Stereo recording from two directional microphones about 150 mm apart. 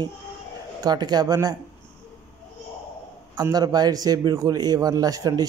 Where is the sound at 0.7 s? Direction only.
25° right (ahead or behind).